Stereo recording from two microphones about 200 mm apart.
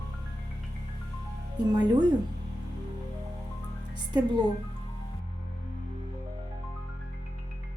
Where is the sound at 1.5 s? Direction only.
20° right (ahead or behind).